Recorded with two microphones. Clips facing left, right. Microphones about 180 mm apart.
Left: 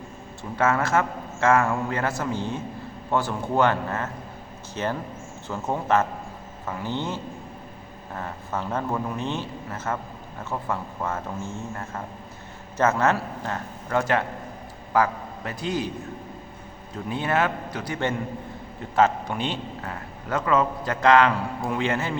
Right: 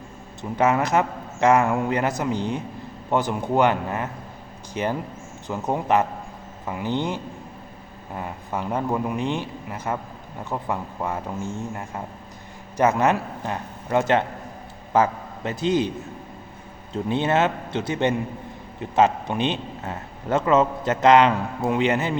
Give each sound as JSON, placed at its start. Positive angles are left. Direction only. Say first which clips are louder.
{"t": 0.5, "sound": "a man's voice", "louder": "right 2 dB", "side_deg": -15}
{"t": 16.9, "sound": "a man's voice", "louder": "right 4 dB", "side_deg": -25}